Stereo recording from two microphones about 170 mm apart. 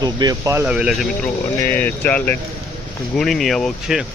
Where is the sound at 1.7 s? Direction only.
10° left (ahead or behind).